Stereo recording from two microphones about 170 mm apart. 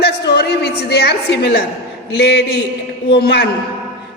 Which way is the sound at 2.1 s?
75° left (ahead or behind).